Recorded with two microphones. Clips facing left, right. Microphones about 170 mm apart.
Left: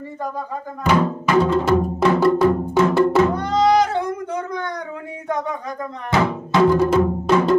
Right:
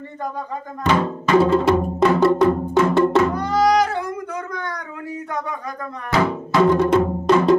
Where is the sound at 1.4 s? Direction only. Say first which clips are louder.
Right 1 dB; centre (ahead or behind).